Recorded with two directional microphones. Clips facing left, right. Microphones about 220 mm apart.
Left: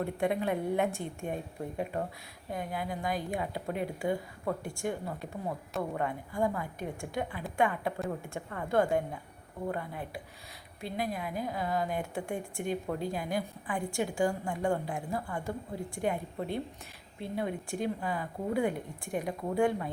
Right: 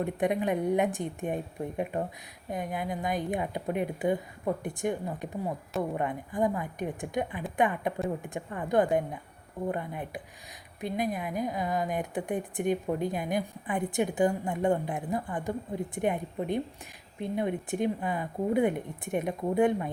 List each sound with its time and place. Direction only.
0.0 s a woman's voice: 15° right (ahead or behind)